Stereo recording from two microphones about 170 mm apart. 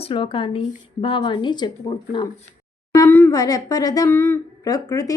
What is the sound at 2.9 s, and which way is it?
Speech, 15° left (ahead or behind).